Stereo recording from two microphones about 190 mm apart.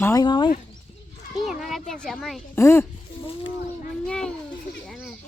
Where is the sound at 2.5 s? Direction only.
15° left (ahead or behind).